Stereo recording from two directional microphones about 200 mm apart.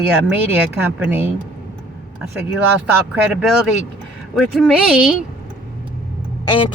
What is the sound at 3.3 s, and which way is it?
Speech, centre (ahead or behind).